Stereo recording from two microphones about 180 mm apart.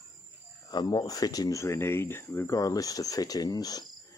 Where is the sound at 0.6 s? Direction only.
20° left (ahead or behind).